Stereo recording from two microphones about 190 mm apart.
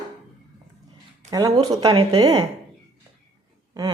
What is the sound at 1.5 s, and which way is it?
Speech, 30° right (ahead or behind).